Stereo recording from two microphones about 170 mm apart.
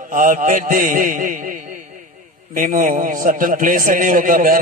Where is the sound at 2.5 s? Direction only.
50° right (ahead or behind).